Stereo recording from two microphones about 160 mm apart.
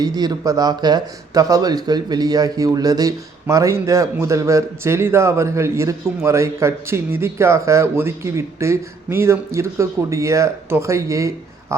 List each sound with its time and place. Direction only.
0.0 s speech: 25° right (ahead or behind)